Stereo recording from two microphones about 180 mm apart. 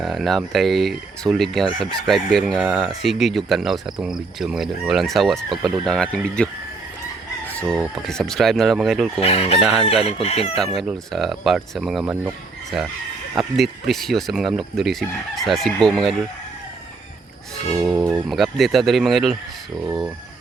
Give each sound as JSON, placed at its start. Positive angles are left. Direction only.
{"t": 0.0, "sound": "speech", "side_deg": 0}
{"t": 9.2, "sound": "chicken", "side_deg": 35}
{"t": 10.6, "sound": "speech", "side_deg": 0}
{"t": 17.7, "sound": "speech", "side_deg": -5}